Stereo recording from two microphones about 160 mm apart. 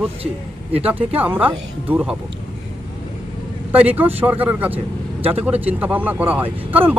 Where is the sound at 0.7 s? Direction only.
40° right (ahead or behind).